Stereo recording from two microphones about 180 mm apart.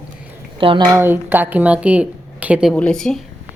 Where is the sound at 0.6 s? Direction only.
30° right (ahead or behind).